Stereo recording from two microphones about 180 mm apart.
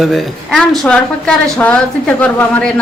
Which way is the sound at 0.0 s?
Centre (ahead or behind).